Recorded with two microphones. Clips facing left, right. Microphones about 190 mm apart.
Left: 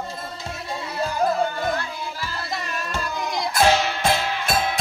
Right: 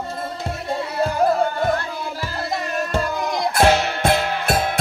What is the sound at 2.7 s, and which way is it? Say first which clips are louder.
Music: right 7 dB; 50° right (ahead or behind).